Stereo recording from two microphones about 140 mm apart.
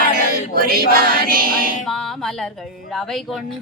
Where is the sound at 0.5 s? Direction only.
90° right.